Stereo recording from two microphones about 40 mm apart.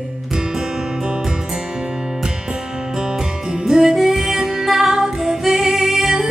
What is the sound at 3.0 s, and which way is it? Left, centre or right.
Music, centre.